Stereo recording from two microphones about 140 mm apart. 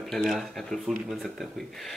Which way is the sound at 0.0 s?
Centre (ahead or behind).